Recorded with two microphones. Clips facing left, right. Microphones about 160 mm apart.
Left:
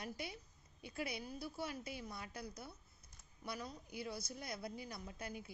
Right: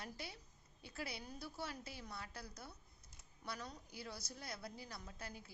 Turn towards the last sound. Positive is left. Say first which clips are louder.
# left 4 dB
turn(degrees=15)  # may be behind; listen again after turning